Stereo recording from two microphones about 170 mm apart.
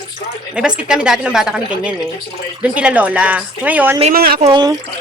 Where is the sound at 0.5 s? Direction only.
5° right (ahead or behind).